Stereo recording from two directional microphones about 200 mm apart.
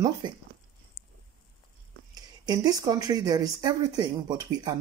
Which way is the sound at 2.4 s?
20° right (ahead or behind).